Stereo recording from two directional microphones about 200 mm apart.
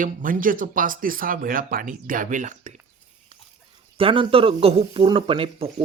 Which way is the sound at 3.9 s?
25° right (ahead or behind).